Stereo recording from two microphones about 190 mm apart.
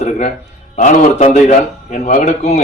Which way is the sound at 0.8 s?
35° left (ahead or behind).